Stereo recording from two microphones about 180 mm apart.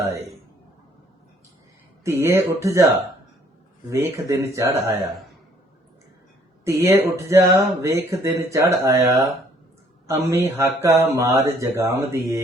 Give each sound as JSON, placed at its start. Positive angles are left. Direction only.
{"t": 2.0, "sound": "speech", "side_deg": -15}
{"t": 6.7, "sound": "speech", "side_deg": -15}